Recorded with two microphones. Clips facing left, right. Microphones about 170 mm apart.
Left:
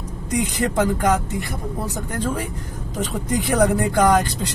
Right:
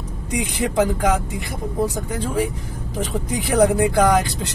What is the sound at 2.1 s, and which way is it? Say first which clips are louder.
Speech: right 1 dB; 10° right (ahead or behind).